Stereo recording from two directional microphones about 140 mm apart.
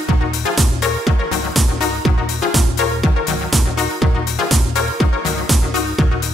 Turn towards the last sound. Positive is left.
turn(degrees=0)  # may be behind; listen again after turning